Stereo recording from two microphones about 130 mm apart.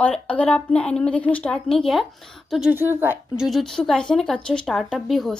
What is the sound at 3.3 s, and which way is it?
A woman's voice, centre (ahead or behind).